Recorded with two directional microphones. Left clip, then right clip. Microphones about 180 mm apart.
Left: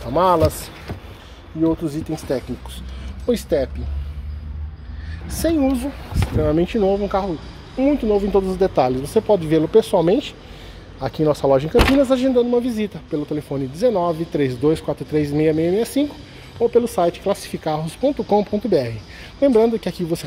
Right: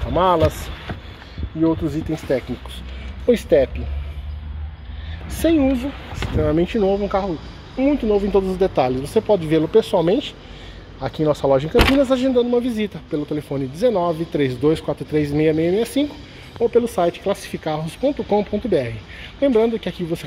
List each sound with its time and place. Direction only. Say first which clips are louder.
0.1 s speech: left 1 dB; 5° left (ahead or behind)
1.6 s speech: right 1 dB; 10° right (ahead or behind)
5.4 s speech: right 2 dB; 5° right (ahead or behind); by 20.2 s 15° left (ahead or behind)